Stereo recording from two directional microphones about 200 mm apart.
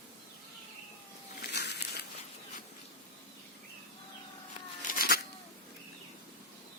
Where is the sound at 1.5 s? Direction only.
55° left (ahead or behind).